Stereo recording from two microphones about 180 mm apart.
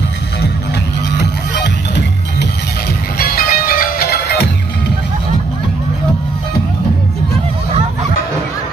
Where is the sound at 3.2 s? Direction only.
55° left (ahead or behind).